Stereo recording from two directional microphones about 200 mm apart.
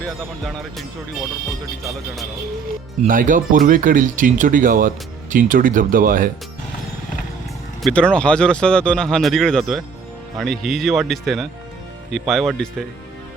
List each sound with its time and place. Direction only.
0.0 s speech: centre (ahead or behind)
3.0 s speech: 40° right (ahead or behind)
7.8 s speech: 5° left (ahead or behind)